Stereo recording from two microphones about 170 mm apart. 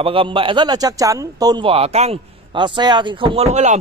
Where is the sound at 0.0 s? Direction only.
30° right (ahead or behind).